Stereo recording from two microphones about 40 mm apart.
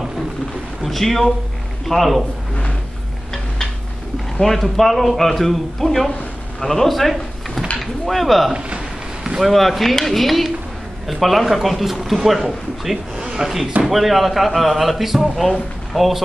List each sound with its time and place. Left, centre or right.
0.8 s speech: centre
4.4 s speech: centre
8.5 s a sound: right
9.4 s speech: centre
13.8 s speech: centre